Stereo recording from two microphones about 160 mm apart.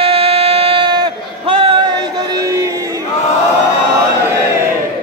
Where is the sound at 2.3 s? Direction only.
20° right (ahead or behind).